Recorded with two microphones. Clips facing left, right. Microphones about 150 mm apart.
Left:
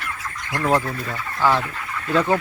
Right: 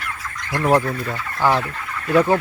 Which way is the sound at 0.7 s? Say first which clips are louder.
Right 3 dB; 20° right (ahead or behind).